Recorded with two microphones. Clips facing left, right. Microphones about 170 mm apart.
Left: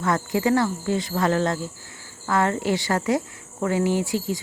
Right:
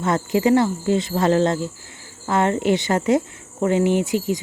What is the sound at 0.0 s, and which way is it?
Speech, 25° right (ahead or behind).